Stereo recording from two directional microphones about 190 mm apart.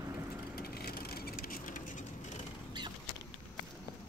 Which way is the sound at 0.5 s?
55° left (ahead or behind).